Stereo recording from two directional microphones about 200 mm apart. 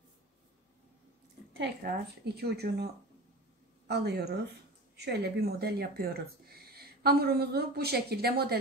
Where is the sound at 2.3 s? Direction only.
55° right (ahead or behind).